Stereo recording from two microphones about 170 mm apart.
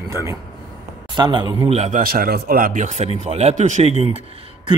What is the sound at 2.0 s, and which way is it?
Speech, 60° right (ahead or behind).